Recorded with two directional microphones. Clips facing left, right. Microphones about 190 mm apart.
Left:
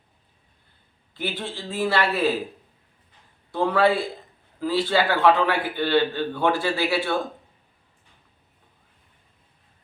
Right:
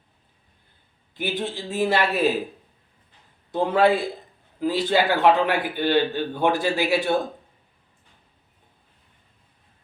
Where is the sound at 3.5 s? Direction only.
20° right (ahead or behind).